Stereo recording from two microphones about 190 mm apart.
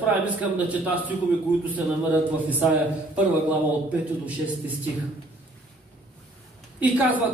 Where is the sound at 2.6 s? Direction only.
10° right (ahead or behind).